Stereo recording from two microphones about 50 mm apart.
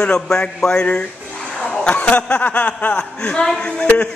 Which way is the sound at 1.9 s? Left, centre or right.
Left.